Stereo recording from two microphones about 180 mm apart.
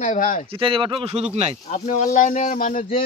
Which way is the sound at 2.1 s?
45° left (ahead or behind).